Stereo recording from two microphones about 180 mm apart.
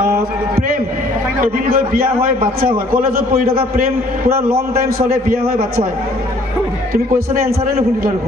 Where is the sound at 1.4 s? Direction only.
55° right (ahead or behind).